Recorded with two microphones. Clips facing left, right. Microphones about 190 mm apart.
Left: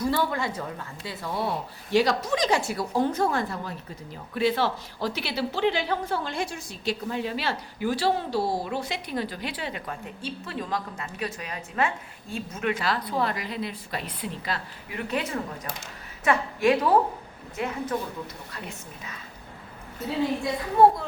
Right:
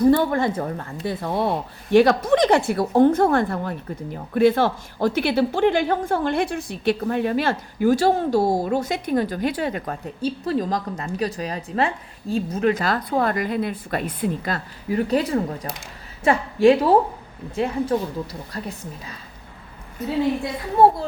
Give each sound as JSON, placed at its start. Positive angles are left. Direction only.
{"t": 0.0, "sound": "a woman's voice", "side_deg": -50}